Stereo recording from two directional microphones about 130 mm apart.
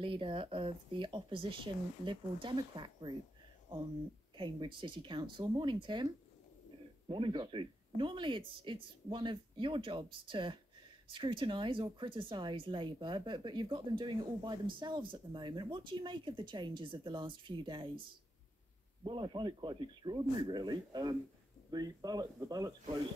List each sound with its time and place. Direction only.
0.0 s speech: 40° right (ahead or behind)
4.4 s speech: 40° right (ahead or behind)
7.1 s speech: 40° right (ahead or behind)
19.0 s speech: 40° right (ahead or behind)